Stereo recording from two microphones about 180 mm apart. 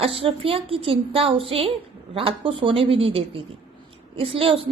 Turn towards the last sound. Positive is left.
turn(degrees=-30)  # may be behind; listen again after turning